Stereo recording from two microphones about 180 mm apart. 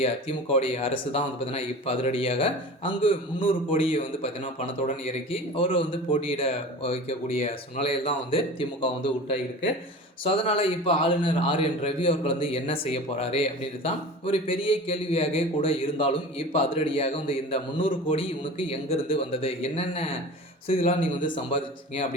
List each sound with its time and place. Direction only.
0.0 s a man's voice: 35° left (ahead or behind)